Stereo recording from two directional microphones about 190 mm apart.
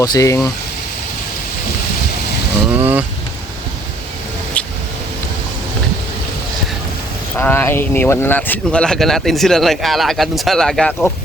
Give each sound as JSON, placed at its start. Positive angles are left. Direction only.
{"t": 0.0, "sound": "speech", "side_deg": 15}
{"t": 2.7, "sound": "speech", "side_deg": -10}
{"t": 4.6, "sound": "vehicle", "side_deg": 5}
{"t": 7.3, "sound": "speech", "side_deg": 10}